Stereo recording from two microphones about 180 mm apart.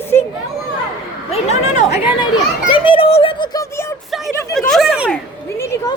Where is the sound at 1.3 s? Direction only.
40° left (ahead or behind).